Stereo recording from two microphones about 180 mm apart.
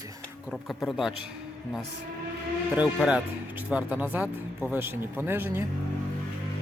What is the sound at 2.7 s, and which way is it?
Speech, 5° right (ahead or behind).